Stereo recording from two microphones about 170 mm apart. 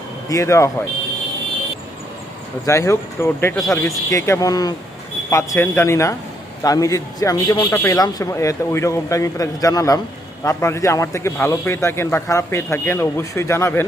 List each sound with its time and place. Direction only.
0.3 s a man's voice: 20° left (ahead or behind)
2.6 s a man's voice: 15° left (ahead or behind)